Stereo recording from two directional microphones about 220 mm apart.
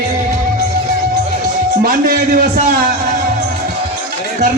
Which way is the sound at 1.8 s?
40° right (ahead or behind).